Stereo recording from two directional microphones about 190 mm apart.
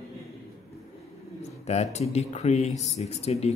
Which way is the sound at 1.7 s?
35° left (ahead or behind).